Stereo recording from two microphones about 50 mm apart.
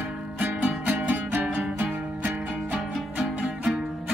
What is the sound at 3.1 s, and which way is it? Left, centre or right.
Music, centre.